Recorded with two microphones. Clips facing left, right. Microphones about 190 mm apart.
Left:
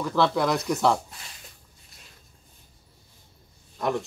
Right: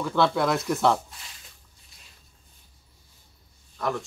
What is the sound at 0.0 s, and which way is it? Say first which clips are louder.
Speech: even; centre (ahead or behind).